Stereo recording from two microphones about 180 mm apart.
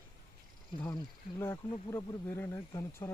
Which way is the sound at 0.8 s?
15° left (ahead or behind).